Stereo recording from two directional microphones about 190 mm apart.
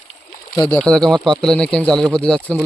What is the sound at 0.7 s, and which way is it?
Speech, 5° left (ahead or behind).